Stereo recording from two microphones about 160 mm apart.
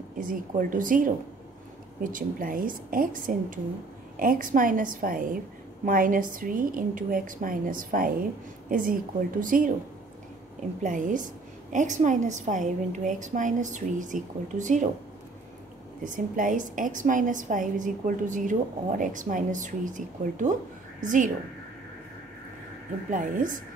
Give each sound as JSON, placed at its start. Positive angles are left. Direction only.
{"t": 0.2, "sound": "a woman's voice", "side_deg": -60}
{"t": 10.8, "sound": "a woman's voice", "side_deg": -55}
{"t": 16.0, "sound": "a woman's voice", "side_deg": -55}
{"t": 23.1, "sound": "a woman's voice", "side_deg": -55}